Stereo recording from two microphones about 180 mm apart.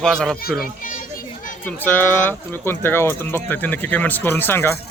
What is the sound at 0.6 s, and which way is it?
Children playing, 50° left (ahead or behind).